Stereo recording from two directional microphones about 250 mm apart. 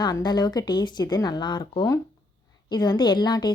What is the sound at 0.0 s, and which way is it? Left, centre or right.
A woman's voice, centre.